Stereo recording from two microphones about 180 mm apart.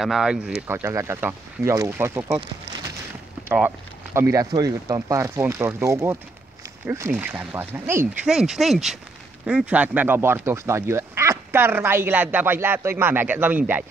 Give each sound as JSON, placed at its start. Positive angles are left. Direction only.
{"t": 0.0, "sound": "speech", "side_deg": -5}
{"t": 8.3, "sound": "speech", "side_deg": -5}